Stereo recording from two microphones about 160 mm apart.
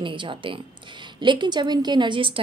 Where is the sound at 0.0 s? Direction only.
30° right (ahead or behind).